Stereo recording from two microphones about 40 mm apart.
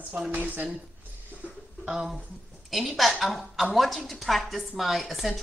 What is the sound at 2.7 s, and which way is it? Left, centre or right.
A woman's voice, centre.